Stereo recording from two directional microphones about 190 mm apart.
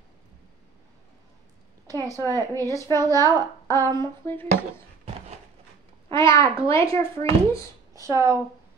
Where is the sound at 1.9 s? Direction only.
15° right (ahead or behind).